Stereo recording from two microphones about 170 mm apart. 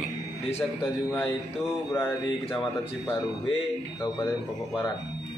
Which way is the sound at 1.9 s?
15° left (ahead or behind).